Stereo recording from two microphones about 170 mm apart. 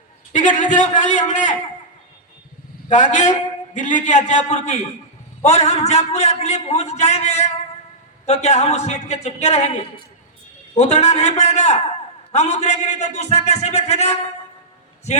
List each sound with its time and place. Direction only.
0.3 s a man's voice: 50° left (ahead or behind)
2.9 s a man's voice: 45° left (ahead or behind)